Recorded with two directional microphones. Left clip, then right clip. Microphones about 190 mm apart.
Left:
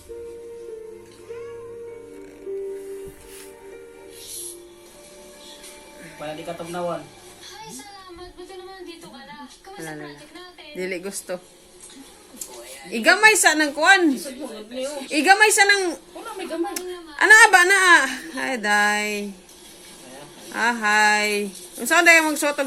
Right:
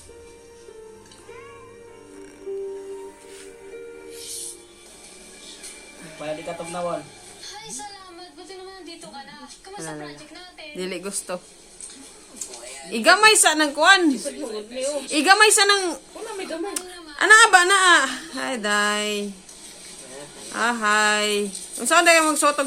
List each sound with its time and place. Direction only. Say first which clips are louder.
6.4 s speech: left 3 dB; centre (ahead or behind)
9.7 s speech: right 1 dB; centre (ahead or behind)
12.9 s speech: even; 10° right (ahead or behind)
15.1 s speech: even; 10° right (ahead or behind)
16.7 s a sound: left 2 dB; 5° right (ahead or behind)
17.6 s speech: left 1 dB; 70° right (ahead or behind)
18.3 s speech: left 2 dB; 5° right (ahead or behind)
18.9 s speech: left 1 dB; 70° right (ahead or behind)
20.5 s speech: left 1 dB; 5° right (ahead or behind)